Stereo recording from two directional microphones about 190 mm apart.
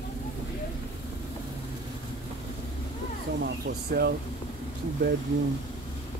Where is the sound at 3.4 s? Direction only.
60° right (ahead or behind).